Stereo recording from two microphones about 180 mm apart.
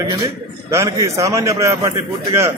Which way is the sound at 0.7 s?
15° right (ahead or behind).